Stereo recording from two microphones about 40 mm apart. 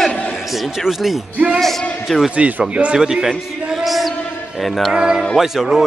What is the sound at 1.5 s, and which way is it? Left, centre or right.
Speech, centre.